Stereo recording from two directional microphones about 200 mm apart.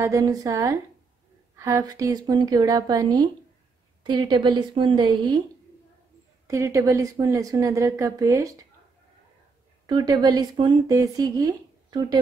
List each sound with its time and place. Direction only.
0.0 s a woman's voice: 15° right (ahead or behind)
6.4 s a woman's voice: 15° right (ahead or behind)
9.8 s a woman's voice: 20° right (ahead or behind)